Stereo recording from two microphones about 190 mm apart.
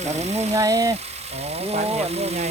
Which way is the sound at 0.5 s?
15° right (ahead or behind).